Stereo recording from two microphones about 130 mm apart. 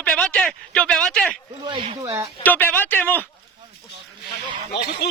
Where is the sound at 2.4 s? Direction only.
15° left (ahead or behind).